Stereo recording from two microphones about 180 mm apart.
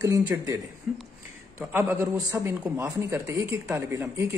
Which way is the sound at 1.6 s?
10° right (ahead or behind).